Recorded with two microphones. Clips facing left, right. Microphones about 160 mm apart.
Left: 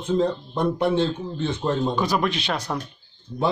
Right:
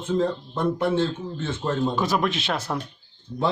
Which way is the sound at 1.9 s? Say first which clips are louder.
Left 1 dB; centre (ahead or behind).